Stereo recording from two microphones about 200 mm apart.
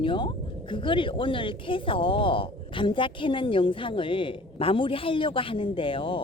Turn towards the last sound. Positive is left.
turn(degrees=25)  # may be behind; listen again after turning